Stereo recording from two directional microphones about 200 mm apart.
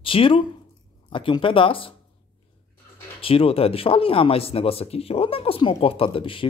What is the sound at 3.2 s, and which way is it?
A man's voice, 30° left (ahead or behind).